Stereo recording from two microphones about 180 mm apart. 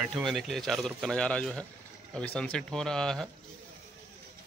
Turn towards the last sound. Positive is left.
turn(degrees=5)  # may be behind; listen again after turning